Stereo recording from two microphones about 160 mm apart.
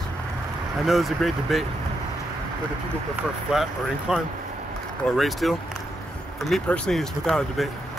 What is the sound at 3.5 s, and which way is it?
Speech, 5° right (ahead or behind).